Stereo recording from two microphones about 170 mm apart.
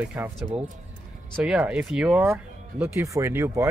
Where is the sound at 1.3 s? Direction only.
5° right (ahead or behind).